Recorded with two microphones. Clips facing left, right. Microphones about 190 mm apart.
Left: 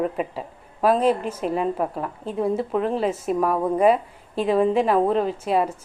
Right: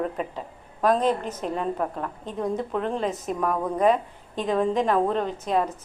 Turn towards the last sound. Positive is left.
turn(degrees=10)  # may be behind; listen again after turning